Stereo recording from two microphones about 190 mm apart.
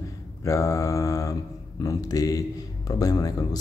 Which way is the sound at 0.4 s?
15° left (ahead or behind).